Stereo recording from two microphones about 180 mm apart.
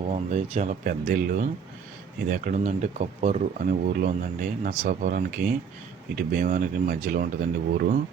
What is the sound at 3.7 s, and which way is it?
Speech, 50° right (ahead or behind).